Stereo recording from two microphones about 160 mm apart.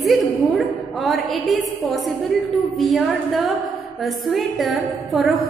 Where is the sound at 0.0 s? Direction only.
Centre (ahead or behind).